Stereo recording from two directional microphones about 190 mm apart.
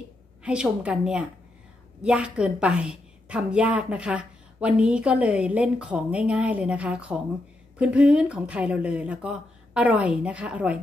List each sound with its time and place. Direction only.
0.4 s a woman's voice: 5° right (ahead or behind)